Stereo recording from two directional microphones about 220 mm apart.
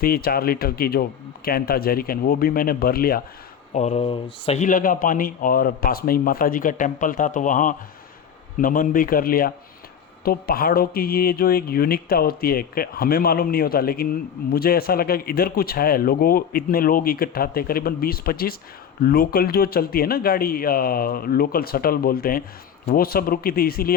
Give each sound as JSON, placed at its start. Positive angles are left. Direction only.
{"t": 0.0, "sound": "speech", "side_deg": 45}
{"t": 3.8, "sound": "speech", "side_deg": 30}